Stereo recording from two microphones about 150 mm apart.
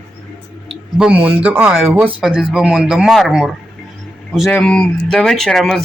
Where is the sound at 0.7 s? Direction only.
5° right (ahead or behind).